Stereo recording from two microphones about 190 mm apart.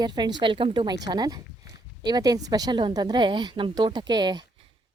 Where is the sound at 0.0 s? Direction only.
25° right (ahead or behind).